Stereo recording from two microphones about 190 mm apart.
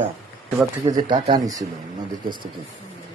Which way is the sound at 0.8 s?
20° right (ahead or behind).